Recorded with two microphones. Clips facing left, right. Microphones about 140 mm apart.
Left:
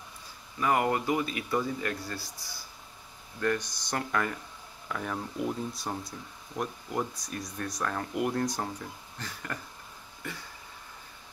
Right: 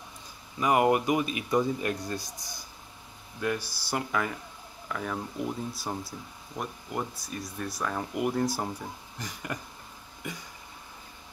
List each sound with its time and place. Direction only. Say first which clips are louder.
0.6 s speech: right 3 dB; 20° right (ahead or behind)
3.3 s speech: left 1 dB; 10° right (ahead or behind)